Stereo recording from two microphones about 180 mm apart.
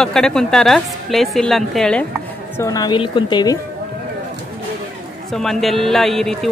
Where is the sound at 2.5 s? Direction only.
20° left (ahead or behind).